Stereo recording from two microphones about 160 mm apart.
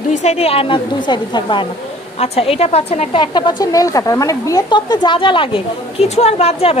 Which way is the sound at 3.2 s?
30° left (ahead or behind).